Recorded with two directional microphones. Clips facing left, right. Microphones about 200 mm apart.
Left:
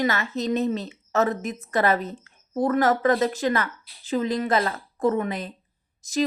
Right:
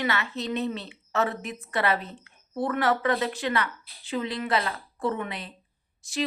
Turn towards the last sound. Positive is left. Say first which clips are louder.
# left 8 dB
turn(degrees=40)  # may be behind; listen again after turning